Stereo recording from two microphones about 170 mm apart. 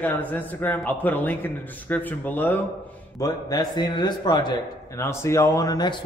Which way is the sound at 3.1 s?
20° left (ahead or behind).